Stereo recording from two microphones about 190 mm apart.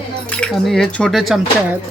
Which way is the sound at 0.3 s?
5° left (ahead or behind).